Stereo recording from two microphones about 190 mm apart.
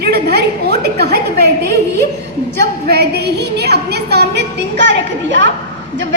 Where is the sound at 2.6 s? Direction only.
55° right (ahead or behind); by 5.5 s 70° right (ahead or behind).